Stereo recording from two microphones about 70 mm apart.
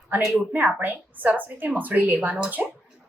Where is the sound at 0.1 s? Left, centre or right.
Right.